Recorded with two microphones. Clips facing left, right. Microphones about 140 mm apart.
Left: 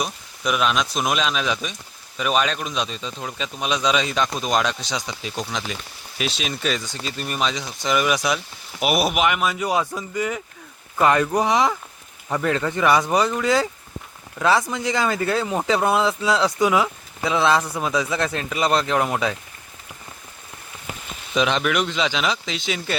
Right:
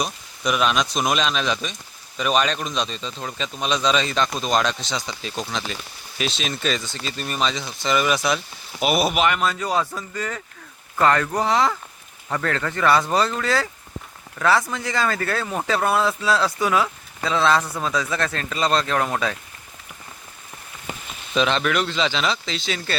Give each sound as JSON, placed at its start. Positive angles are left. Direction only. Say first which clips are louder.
{"t": 0.0, "sound": "a man's voice", "louder": "even", "side_deg": 0}
{"t": 20.9, "sound": "a sound", "louder": "right 1 dB", "side_deg": 5}
{"t": 21.3, "sound": "a man's voice", "louder": "even", "side_deg": 10}